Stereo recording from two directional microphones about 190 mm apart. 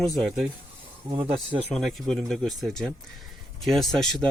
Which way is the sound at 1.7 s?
Centre (ahead or behind).